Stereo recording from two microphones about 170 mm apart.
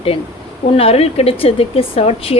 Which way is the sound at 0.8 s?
35° left (ahead or behind).